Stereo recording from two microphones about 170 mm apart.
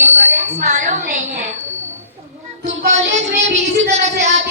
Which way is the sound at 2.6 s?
45° right (ahead or behind).